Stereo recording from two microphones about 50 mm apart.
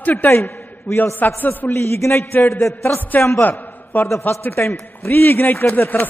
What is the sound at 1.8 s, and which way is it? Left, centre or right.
Speech, left.